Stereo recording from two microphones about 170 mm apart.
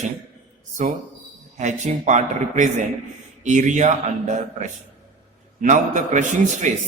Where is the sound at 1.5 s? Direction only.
45° right (ahead or behind).